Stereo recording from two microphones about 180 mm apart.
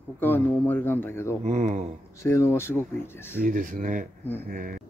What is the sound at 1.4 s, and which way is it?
Speech, 40° right (ahead or behind).